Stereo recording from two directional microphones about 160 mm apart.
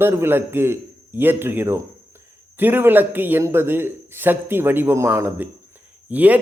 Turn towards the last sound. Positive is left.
turn(degrees=-10)  # may be behind; listen again after turning